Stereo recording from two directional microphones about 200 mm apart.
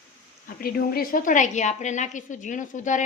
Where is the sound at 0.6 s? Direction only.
50° left (ahead or behind).